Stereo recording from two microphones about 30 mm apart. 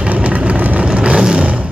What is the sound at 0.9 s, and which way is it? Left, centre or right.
Vehicle, right.